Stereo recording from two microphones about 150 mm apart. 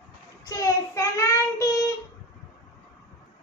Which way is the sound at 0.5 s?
20° left (ahead or behind).